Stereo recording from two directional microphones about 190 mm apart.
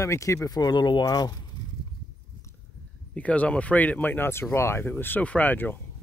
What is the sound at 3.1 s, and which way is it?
Speech, 5° left (ahead or behind).